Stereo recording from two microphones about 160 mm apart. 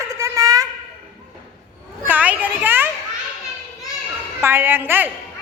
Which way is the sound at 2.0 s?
10° right (ahead or behind).